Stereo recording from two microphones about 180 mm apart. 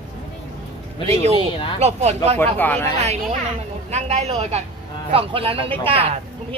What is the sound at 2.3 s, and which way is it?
Speech, 10° left (ahead or behind).